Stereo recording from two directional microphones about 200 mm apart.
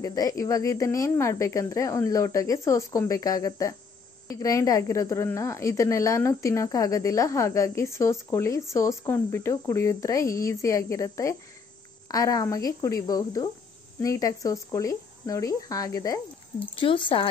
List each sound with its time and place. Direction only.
0.0 s a woman's voice: 20° left (ahead or behind)